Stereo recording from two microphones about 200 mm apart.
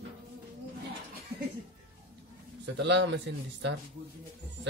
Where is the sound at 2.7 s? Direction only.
60° right (ahead or behind).